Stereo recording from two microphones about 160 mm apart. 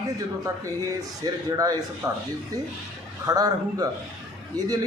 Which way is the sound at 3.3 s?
25° right (ahead or behind).